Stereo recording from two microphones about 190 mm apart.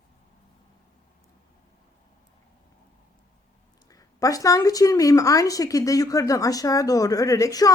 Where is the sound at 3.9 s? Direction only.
20° left (ahead or behind).